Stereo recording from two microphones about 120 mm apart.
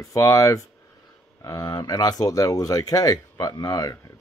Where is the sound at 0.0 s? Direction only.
25° left (ahead or behind).